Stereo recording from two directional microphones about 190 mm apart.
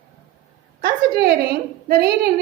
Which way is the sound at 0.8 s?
55° right (ahead or behind).